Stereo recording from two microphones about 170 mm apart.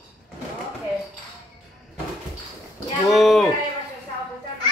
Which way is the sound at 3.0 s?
Centre (ahead or behind).